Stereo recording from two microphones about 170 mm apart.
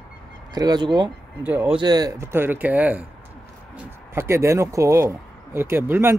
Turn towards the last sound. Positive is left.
turn(degrees=-15)  # may be behind; listen again after turning